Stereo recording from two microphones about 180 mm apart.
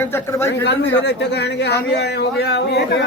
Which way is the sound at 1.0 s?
70° left (ahead or behind).